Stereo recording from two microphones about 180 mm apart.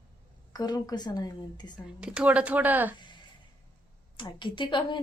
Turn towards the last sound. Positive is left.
turn(degrees=25)  # may be behind; listen again after turning